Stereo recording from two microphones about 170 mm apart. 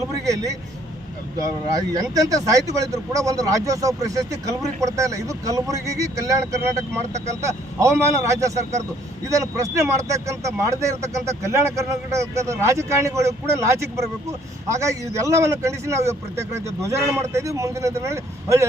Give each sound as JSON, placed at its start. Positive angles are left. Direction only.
{"t": 1.5, "sound": "speech", "side_deg": -20}